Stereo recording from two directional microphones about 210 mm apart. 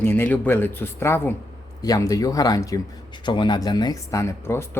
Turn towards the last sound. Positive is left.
turn(degrees=10)  # may be behind; listen again after turning